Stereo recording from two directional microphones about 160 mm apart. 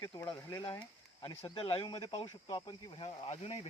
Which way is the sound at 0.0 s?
25° left (ahead or behind).